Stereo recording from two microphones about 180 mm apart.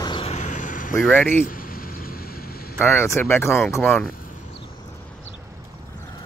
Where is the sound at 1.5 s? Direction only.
50° left (ahead or behind).